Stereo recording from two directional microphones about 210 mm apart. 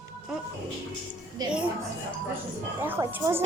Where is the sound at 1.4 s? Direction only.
20° right (ahead or behind).